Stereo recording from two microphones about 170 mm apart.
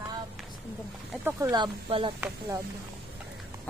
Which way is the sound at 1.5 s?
30° right (ahead or behind).